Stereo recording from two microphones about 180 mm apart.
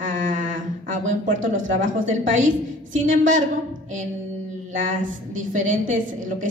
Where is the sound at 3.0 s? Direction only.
45° right (ahead or behind).